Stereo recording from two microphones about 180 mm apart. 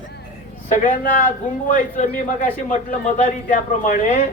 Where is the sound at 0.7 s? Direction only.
45° left (ahead or behind).